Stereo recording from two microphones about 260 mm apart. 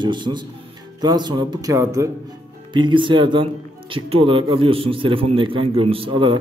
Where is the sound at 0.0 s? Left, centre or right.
Centre.